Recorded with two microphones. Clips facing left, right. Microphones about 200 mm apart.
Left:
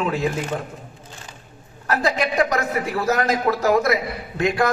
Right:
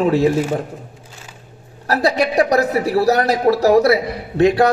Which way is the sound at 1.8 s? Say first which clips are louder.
Right 5 dB; 35° right (ahead or behind).